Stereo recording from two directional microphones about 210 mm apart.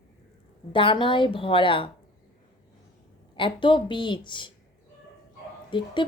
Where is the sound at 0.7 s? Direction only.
25° left (ahead or behind).